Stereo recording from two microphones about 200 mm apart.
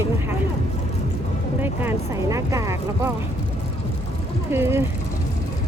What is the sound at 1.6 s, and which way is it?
Speech, 10° right (ahead or behind).